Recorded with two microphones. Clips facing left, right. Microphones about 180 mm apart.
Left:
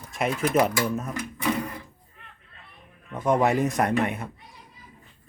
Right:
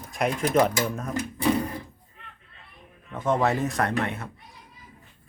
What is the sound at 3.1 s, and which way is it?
Speech, 15° left (ahead or behind).